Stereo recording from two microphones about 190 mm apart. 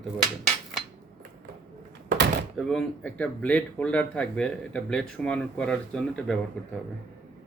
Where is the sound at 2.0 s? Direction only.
60° right (ahead or behind).